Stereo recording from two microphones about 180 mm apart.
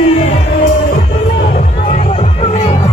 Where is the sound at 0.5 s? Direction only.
55° left (ahead or behind); by 2.8 s 35° left (ahead or behind).